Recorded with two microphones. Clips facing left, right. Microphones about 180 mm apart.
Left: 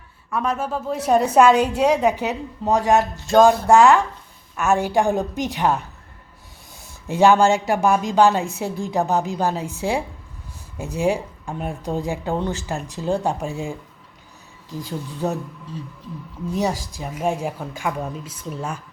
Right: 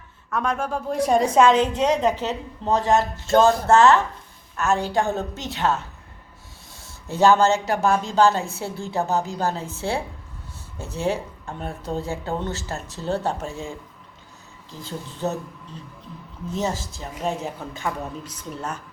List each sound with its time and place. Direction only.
0.3 s a woman's voice: 5° left (ahead or behind)
16.6 s a woman's voice: 15° left (ahead or behind)